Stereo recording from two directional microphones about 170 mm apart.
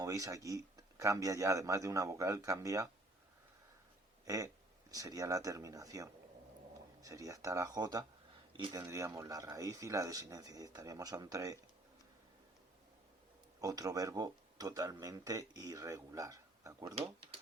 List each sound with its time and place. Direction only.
0.0 s speech: 20° right (ahead or behind)
4.3 s speech: 20° right (ahead or behind)
13.6 s speech: 20° right (ahead or behind)